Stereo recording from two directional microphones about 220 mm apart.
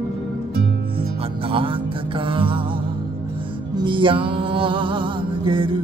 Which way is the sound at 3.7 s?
20° right (ahead or behind).